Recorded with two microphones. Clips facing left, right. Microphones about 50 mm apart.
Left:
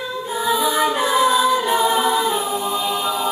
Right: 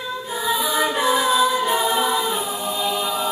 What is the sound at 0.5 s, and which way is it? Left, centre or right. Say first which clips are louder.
Music: left 2 dB; left.